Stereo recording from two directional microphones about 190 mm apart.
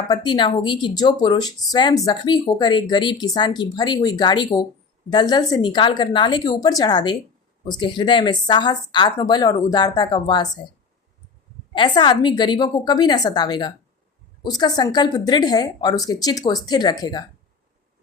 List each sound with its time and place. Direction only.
0.1 s speech: 25° left (ahead or behind)
11.7 s speech: 25° left (ahead or behind)